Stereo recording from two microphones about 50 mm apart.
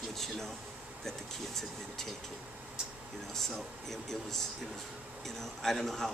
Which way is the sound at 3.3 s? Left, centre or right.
Centre.